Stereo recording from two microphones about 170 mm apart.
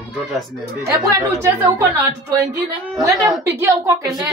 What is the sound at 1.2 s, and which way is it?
A woman's voice, 15° right (ahead or behind).